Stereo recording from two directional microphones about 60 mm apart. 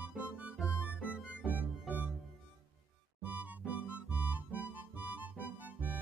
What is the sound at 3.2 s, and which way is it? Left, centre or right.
Music, right.